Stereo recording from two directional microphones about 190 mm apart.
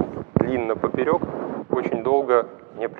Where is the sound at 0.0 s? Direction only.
20° right (ahead or behind).